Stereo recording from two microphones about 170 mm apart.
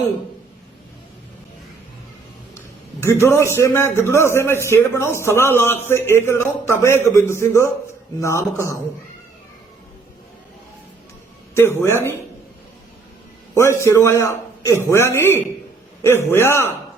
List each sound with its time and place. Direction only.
3.0 s a man's voice: 15° left (ahead or behind)
11.5 s a man's voice: 15° left (ahead or behind)
13.5 s a man's voice: 15° left (ahead or behind)